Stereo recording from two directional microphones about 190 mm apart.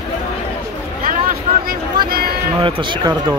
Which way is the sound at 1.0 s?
45° right (ahead or behind).